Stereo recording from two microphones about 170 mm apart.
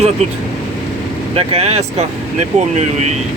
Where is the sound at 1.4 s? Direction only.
35° right (ahead or behind).